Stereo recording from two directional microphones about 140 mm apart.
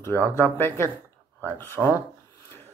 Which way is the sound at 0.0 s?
15° left (ahead or behind).